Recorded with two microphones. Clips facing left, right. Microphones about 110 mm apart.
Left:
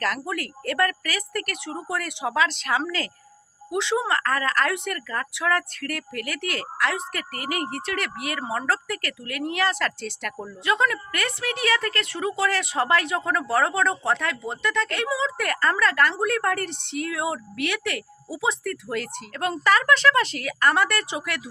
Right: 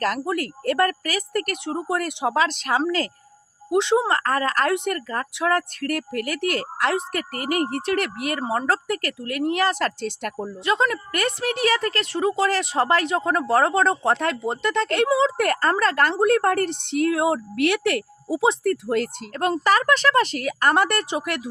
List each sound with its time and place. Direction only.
0.0 s a woman's voice: 35° right (ahead or behind)
3.7 s speech: 50° right (ahead or behind)
3.9 s a woman's voice: 30° right (ahead or behind)
7.8 s speech: 50° right (ahead or behind)
8.4 s a woman's voice: 30° right (ahead or behind)
10.3 s a woman's voice: 25° right (ahead or behind)
14.9 s speech: 55° right (ahead or behind)
15.4 s a woman's voice: 35° right (ahead or behind)
18.6 s a woman's voice: 40° right (ahead or behind)
19.6 s speech: 25° right (ahead or behind)
20.4 s speech: 40° right (ahead or behind)